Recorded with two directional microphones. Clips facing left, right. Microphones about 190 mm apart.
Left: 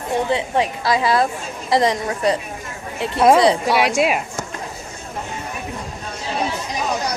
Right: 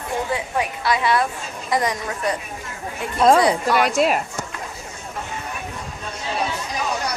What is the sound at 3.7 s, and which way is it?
Speech, 5° left (ahead or behind).